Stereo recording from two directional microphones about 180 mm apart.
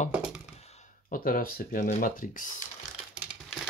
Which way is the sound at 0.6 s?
35° left (ahead or behind).